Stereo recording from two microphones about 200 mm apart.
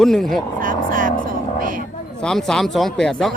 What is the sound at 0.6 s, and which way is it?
Vehicle, 45° right (ahead or behind).